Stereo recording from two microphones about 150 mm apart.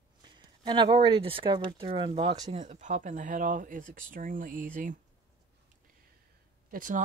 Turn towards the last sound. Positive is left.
turn(degrees=-65)  # may be behind; listen again after turning